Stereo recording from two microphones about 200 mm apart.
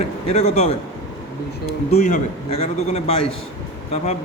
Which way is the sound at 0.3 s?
35° left (ahead or behind).